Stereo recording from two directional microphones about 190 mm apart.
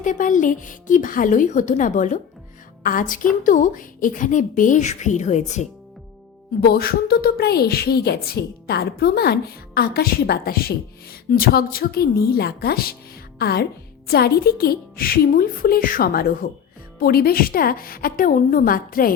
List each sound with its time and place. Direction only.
0.0 s a woman's voice: 45° left (ahead or behind)
6.6 s a woman's voice: 55° left (ahead or behind)